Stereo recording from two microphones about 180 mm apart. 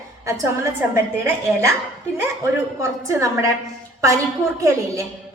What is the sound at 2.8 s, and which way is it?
A woman's voice, 15° right (ahead or behind).